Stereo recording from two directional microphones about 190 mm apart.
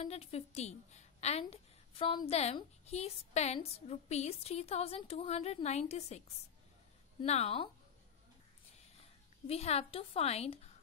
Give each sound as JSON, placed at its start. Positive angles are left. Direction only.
{"t": 0.0, "sound": "a woman's voice", "side_deg": 35}
{"t": 9.5, "sound": "a woman's voice", "side_deg": 35}